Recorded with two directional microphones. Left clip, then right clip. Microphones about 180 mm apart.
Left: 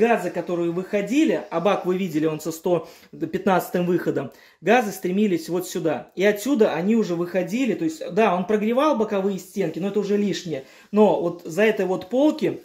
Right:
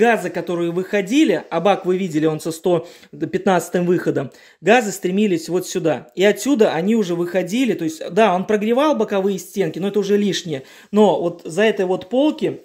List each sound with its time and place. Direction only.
0.0 s speech: 50° right (ahead or behind); by 12.5 s 20° right (ahead or behind)